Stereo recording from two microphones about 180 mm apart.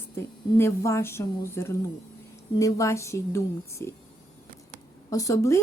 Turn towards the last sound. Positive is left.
turn(degrees=15)  # may be behind; listen again after turning